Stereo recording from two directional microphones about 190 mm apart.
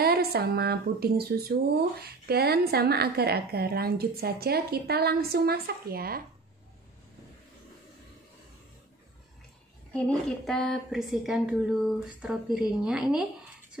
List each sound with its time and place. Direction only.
0.0 s a woman's voice: 55° right (ahead or behind)
9.9 s a woman's voice: 5° left (ahead or behind)